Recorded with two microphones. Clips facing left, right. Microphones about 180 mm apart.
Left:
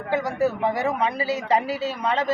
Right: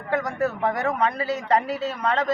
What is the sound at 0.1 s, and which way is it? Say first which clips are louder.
Speech: left 2 dB; 5° left (ahead or behind).